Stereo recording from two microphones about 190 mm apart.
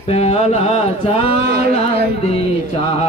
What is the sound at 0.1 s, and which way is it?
Music, 35° left (ahead or behind).